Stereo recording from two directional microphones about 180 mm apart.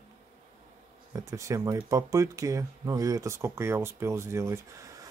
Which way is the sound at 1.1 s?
15° right (ahead or behind).